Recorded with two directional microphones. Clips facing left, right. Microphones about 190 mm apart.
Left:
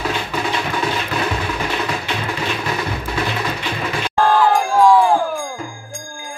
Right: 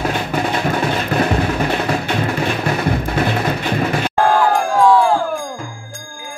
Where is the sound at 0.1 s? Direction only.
50° right (ahead or behind).